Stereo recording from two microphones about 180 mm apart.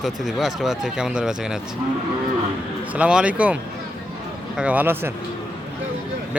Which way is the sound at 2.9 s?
5° right (ahead or behind).